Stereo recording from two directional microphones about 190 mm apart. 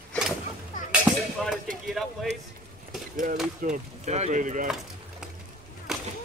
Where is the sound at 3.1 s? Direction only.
45° right (ahead or behind).